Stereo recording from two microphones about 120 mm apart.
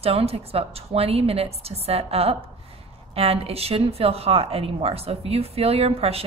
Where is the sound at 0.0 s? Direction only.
55° right (ahead or behind).